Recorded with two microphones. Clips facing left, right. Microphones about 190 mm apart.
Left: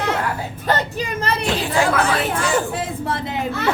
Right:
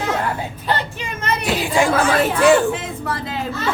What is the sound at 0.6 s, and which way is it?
Speech, 40° left (ahead or behind).